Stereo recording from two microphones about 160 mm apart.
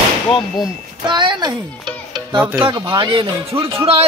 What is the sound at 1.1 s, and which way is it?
Speech, 30° right (ahead or behind).